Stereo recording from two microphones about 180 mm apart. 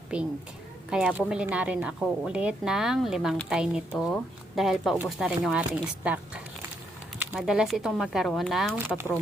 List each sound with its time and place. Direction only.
0.9 s a woman's voice: 5° right (ahead or behind)